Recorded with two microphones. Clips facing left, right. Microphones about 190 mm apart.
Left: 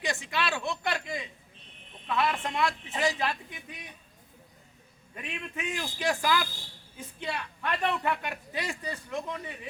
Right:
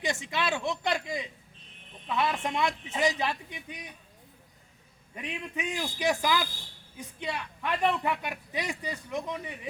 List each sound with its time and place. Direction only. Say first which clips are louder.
0.0 s a woman's voice: right 1 dB; 20° right (ahead or behind)
0.9 s a sound: right 2 dB; 20° right (ahead or behind)
2.0 s a woman's voice: even; 20° right (ahead or behind)
5.1 s a man's voice: right 2 dB; 15° right (ahead or behind)